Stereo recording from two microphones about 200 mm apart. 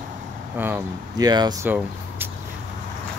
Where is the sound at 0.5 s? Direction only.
10° right (ahead or behind).